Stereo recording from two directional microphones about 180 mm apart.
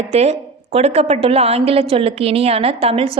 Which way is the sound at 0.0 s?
35° right (ahead or behind).